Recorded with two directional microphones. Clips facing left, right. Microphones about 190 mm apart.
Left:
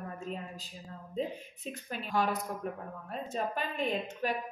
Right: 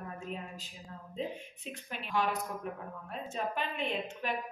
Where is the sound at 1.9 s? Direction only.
40° left (ahead or behind).